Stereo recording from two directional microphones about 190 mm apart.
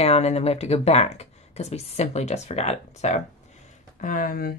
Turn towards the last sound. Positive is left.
turn(degrees=50)  # may be behind; listen again after turning